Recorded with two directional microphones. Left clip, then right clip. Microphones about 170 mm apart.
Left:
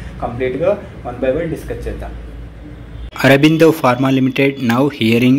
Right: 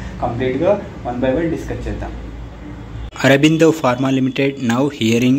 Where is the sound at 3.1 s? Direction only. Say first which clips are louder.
Left 2 dB; centre (ahead or behind).